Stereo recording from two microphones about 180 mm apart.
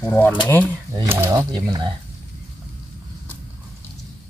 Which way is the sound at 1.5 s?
25° right (ahead or behind).